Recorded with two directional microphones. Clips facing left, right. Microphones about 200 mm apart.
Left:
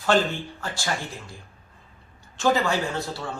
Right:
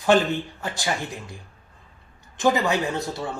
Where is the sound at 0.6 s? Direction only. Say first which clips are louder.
Right 2 dB; 20° right (ahead or behind).